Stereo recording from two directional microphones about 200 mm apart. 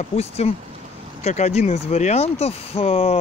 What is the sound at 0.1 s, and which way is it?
Speech, 30° left (ahead or behind).